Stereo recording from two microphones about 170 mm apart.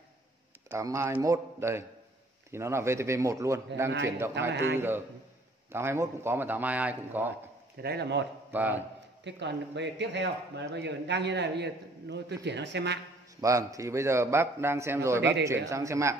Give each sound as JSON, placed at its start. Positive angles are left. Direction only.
{"t": 0.7, "sound": "a man's voice", "side_deg": -15}
{"t": 4.5, "sound": "speech", "side_deg": -90}
{"t": 4.7, "sound": "a man's voice", "side_deg": -10}
{"t": 7.8, "sound": "a man's voice", "side_deg": -75}
{"t": 8.5, "sound": "a man's voice", "side_deg": -10}
{"t": 9.2, "sound": "speech", "side_deg": -90}
{"t": 13.4, "sound": "a man's voice", "side_deg": -20}